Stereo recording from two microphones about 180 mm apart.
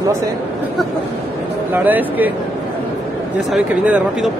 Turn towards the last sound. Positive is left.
turn(degrees=-5)  # may be behind; listen again after turning